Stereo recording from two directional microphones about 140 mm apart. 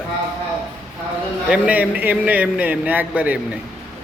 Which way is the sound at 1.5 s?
10° right (ahead or behind).